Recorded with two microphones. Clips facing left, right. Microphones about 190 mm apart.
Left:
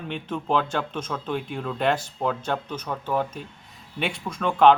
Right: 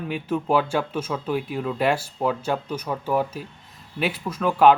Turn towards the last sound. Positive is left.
turn(degrees=-5)  # may be behind; listen again after turning